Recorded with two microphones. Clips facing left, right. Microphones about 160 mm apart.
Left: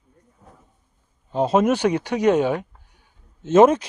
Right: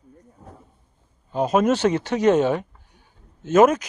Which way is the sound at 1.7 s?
15° left (ahead or behind).